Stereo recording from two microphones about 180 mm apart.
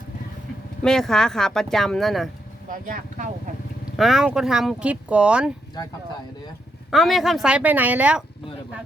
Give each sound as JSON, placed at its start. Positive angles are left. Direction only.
{"t": 0.8, "sound": "speech", "side_deg": 5}
{"t": 2.6, "sound": "speech", "side_deg": -45}
{"t": 3.9, "sound": "speech", "side_deg": 0}
{"t": 6.9, "sound": "speech", "side_deg": 0}